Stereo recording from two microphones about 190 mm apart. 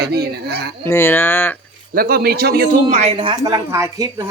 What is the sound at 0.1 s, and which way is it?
Speech, 55° right (ahead or behind).